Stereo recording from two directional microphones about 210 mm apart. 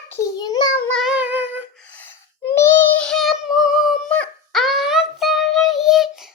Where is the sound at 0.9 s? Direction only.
Centre (ahead or behind).